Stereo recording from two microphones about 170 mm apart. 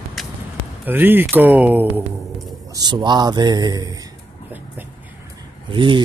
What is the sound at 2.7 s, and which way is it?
Speech, 25° right (ahead or behind).